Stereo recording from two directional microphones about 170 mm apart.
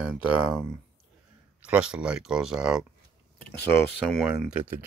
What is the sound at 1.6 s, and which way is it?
Speech, 5° right (ahead or behind).